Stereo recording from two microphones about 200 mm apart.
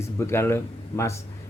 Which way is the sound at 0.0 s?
10° left (ahead or behind).